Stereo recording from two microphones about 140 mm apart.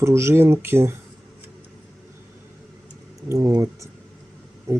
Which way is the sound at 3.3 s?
25° right (ahead or behind).